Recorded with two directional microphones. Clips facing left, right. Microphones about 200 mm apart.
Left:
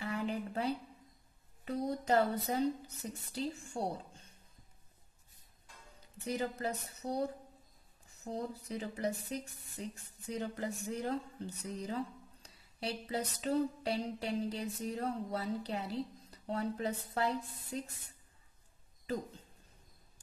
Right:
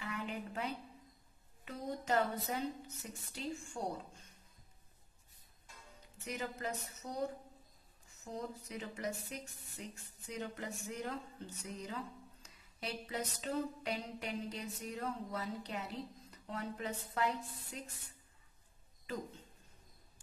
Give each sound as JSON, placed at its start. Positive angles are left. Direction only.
{"t": 0.0, "sound": "a sound", "side_deg": 35}
{"t": 1.6, "sound": "a woman's voice", "side_deg": 35}
{"t": 6.2, "sound": "a woman's voice", "side_deg": 35}